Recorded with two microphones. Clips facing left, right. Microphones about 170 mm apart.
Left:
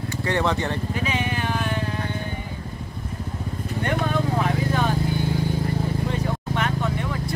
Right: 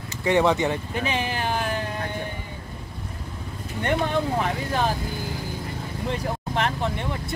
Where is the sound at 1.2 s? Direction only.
35° right (ahead or behind).